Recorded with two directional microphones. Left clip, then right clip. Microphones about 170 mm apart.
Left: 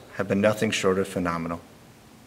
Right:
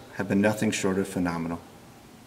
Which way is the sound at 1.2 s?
25° left (ahead or behind).